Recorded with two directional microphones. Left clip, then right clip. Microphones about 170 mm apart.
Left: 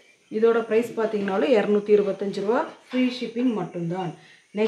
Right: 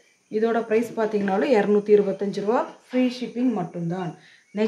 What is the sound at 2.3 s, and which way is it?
Speech, 30° right (ahead or behind).